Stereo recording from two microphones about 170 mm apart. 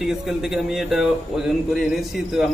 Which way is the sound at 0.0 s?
Centre (ahead or behind).